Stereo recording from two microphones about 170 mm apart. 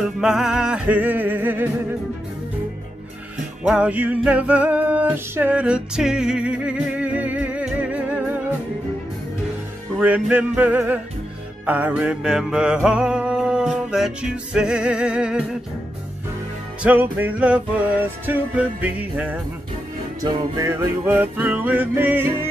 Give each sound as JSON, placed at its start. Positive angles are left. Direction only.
{"t": 0.0, "sound": "music", "side_deg": -5}
{"t": 3.6, "sound": "music", "side_deg": -5}
{"t": 9.9, "sound": "music", "side_deg": -5}
{"t": 16.8, "sound": "music", "side_deg": -10}
{"t": 20.2, "sound": "music", "side_deg": -25}